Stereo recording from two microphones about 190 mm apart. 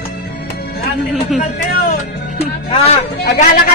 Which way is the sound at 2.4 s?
30° left (ahead or behind).